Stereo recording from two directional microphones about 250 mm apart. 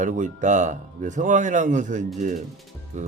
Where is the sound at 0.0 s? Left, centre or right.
Right.